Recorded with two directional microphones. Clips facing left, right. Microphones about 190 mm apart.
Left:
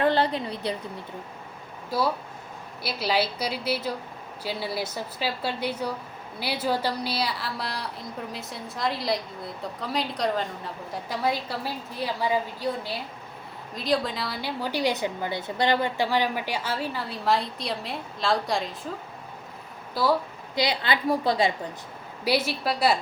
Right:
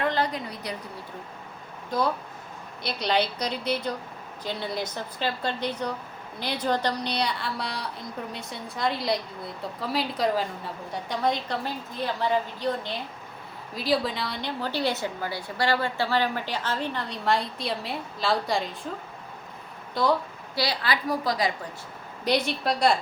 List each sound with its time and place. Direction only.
0.0 s a sound: 30° left (ahead or behind)
1.9 s a woman's voice: 5° left (ahead or behind)
19.9 s speech: 5° left (ahead or behind)
20.6 s a woman's voice: 20° left (ahead or behind)
22.2 s a woman's voice: 5° left (ahead or behind)